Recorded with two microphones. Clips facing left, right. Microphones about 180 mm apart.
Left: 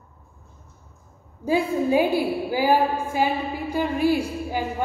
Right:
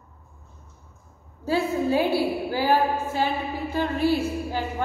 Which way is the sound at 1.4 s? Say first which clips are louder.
Left 2 dB; 15° left (ahead or behind).